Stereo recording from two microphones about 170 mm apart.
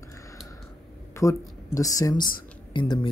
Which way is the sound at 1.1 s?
15° left (ahead or behind).